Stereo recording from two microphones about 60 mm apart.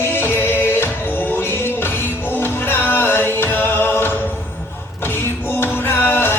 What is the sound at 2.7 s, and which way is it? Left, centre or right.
Music, left.